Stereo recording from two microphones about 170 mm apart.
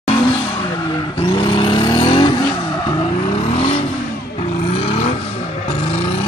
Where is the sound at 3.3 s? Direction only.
35° left (ahead or behind).